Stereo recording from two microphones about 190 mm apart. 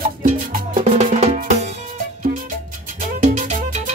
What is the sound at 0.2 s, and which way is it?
Music, 40° right (ahead or behind).